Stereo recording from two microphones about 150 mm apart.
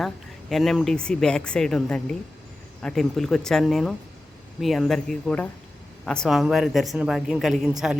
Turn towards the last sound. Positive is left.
turn(degrees=0)  # may be behind; listen again after turning